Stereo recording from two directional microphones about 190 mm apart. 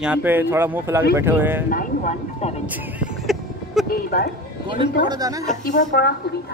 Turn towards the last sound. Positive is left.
turn(degrees=60)  # may be behind; listen again after turning